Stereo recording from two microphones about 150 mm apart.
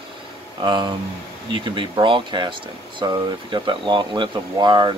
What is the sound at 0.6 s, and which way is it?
Speech, 30° right (ahead or behind).